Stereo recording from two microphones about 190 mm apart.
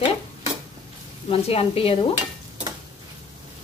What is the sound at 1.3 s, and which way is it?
Speech, 30° left (ahead or behind).